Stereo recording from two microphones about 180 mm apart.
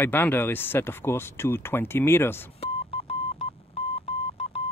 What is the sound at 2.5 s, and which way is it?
Telephone dialing, 35° left (ahead or behind).